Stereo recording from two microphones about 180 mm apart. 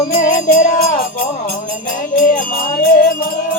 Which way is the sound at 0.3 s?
50° left (ahead or behind).